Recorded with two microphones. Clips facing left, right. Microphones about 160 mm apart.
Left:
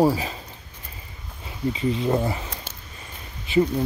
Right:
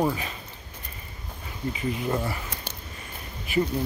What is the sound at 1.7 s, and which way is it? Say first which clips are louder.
Speech: left 5 dB; 25° left (ahead or behind).